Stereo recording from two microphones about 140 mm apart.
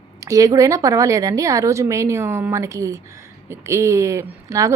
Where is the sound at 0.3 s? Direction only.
25° right (ahead or behind).